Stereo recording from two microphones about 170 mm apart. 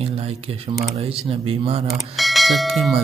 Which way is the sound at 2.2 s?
Centre (ahead or behind).